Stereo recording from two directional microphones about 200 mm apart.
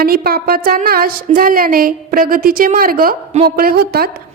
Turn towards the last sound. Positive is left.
turn(degrees=-50)  # may be behind; listen again after turning